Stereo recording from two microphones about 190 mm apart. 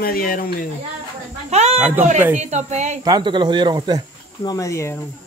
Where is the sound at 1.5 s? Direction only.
35° right (ahead or behind).